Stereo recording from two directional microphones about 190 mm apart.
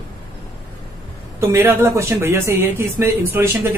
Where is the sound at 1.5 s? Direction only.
15° right (ahead or behind).